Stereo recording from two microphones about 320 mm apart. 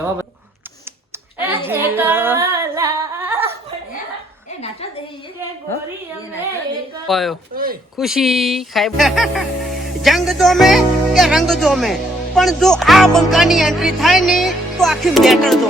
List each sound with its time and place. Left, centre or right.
1.5 s singing: centre
7.1 s speech: centre
7.5 s speech: right
7.9 s speech: centre